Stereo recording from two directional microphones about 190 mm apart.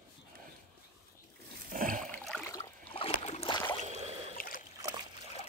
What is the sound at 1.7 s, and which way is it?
Rowboat, 45° right (ahead or behind).